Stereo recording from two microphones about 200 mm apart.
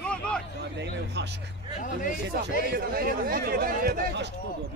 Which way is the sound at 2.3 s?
50° right (ahead or behind).